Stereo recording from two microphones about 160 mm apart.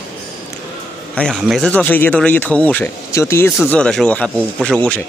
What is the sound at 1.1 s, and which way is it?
Speech, 5° left (ahead or behind).